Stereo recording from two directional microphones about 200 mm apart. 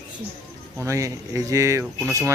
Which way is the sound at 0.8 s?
15° right (ahead or behind).